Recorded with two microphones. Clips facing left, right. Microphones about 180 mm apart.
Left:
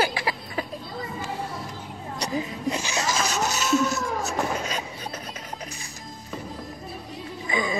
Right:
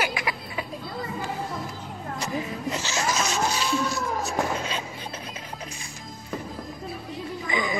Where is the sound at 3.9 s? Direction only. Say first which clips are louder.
Even; 35° right (ahead or behind).